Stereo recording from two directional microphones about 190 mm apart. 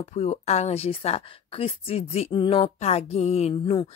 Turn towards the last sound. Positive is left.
turn(degrees=35)  # may be behind; listen again after turning